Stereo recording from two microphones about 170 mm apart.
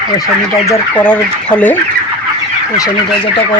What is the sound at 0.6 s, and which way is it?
Speech, 10° left (ahead or behind).